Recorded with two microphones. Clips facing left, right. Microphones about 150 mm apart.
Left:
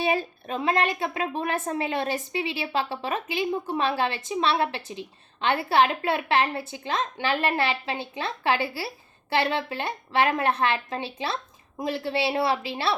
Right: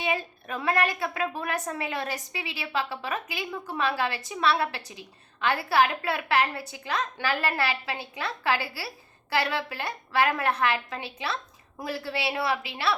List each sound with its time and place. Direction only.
0.0 s a woman's voice: 35° left (ahead or behind)